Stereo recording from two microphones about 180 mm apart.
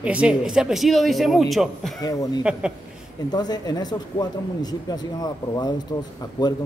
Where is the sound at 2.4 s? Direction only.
5° right (ahead or behind).